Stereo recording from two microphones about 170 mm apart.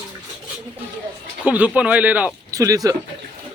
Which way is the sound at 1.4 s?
10° right (ahead or behind).